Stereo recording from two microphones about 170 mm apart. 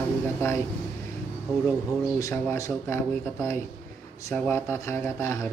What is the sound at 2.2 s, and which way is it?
A man's voice, 20° left (ahead or behind).